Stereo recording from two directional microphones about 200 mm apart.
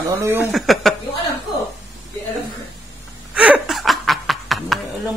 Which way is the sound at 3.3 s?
5° right (ahead or behind).